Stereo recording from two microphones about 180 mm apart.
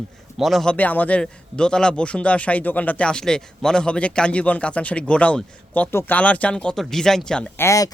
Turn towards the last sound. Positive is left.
turn(degrees=20)  # may be behind; listen again after turning